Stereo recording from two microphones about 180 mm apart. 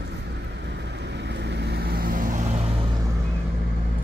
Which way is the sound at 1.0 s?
70° right (ahead or behind).